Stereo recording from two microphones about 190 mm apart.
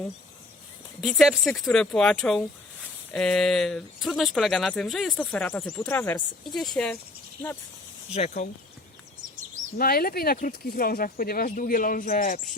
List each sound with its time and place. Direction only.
1.0 s speech: centre (ahead or behind)
8.4 s speech: 40° left (ahead or behind)
9.7 s speech: 50° left (ahead or behind)